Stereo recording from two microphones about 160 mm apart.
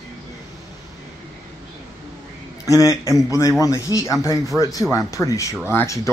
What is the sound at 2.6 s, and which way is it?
A man's voice, 20° left (ahead or behind).